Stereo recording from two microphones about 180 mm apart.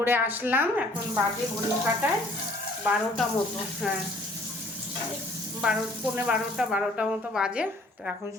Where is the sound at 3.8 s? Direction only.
Centre (ahead or behind).